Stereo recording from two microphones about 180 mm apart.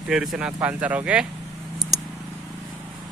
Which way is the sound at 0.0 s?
Centre (ahead or behind).